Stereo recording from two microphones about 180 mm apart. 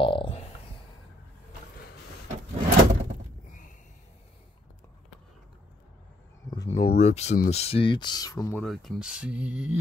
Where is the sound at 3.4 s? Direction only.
45° left (ahead or behind).